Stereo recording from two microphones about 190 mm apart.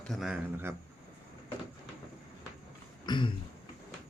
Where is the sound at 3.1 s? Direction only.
25° left (ahead or behind).